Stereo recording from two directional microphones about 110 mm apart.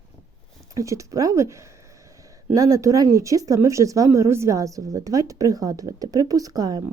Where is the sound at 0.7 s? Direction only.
30° right (ahead or behind).